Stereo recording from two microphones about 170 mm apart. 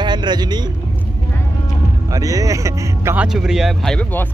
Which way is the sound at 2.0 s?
20° right (ahead or behind).